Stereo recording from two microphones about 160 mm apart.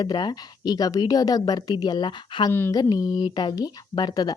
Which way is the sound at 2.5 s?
15° left (ahead or behind).